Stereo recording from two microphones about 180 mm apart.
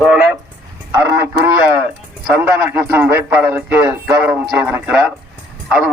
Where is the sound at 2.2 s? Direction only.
10° right (ahead or behind).